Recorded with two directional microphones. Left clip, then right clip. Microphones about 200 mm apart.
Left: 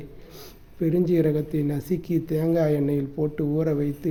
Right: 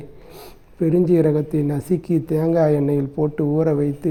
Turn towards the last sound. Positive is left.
turn(degrees=-15)  # may be behind; listen again after turning